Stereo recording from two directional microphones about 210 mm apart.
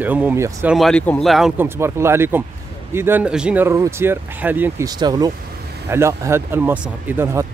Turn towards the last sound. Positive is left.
turn(degrees=-10)  # may be behind; listen again after turning